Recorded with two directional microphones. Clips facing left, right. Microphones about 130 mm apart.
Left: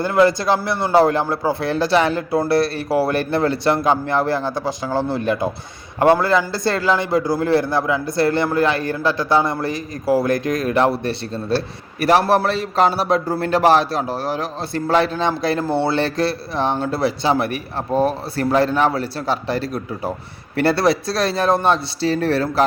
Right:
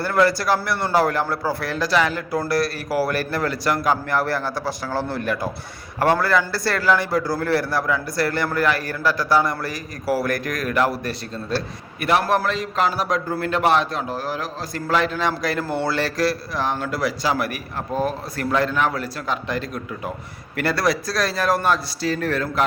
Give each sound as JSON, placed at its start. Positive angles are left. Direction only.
{"t": 0.0, "sound": "a man's voice", "side_deg": 20}